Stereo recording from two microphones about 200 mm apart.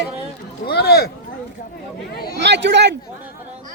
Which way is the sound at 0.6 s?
50° left (ahead or behind).